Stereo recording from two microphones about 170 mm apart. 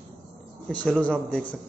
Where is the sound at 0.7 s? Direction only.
10° left (ahead or behind).